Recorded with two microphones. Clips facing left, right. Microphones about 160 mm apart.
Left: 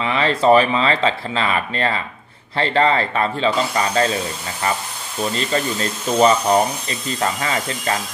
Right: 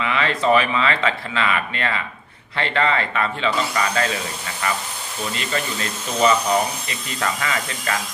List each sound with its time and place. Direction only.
0.0 s speech: 35° left (ahead or behind)
5.3 s speech: 35° left (ahead or behind)